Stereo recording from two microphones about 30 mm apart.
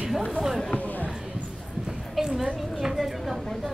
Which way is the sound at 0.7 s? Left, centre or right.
Left.